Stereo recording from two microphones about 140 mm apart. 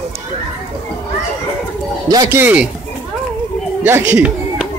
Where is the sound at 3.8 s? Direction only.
15° right (ahead or behind).